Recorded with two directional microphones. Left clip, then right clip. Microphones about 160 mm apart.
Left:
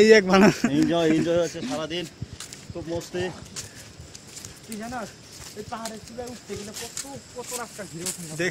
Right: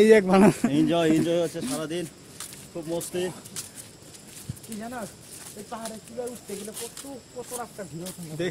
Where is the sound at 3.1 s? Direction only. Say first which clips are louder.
Even; 30° right (ahead or behind).